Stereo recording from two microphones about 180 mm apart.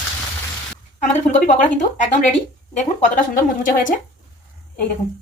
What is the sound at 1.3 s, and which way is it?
A woman's voice, 40° left (ahead or behind).